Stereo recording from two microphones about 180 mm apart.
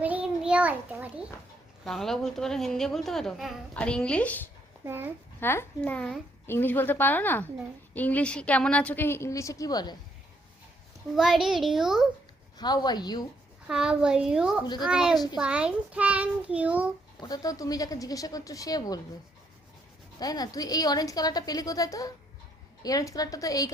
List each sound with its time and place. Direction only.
0.0 s child singing: 5° right (ahead or behind)
1.8 s a woman's voice: centre (ahead or behind)
4.9 s a child's voice: 10° right (ahead or behind)
5.4 s a woman's voice: 10° left (ahead or behind)
11.1 s a woman's voice: centre (ahead or behind)
12.5 s a woman's voice: 25° left (ahead or behind)
13.7 s a woman's voice: 5° right (ahead or behind)
17.2 s a woman's voice: 20° left (ahead or behind)
20.1 s a woman's voice: 20° left (ahead or behind)